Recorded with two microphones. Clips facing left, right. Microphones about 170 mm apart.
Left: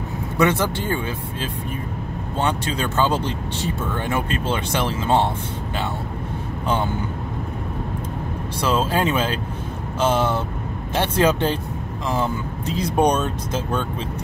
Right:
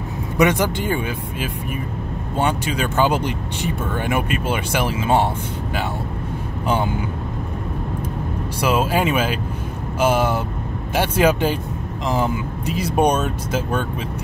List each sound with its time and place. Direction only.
0.4 s speech: 15° right (ahead or behind)
8.5 s speech: 10° right (ahead or behind)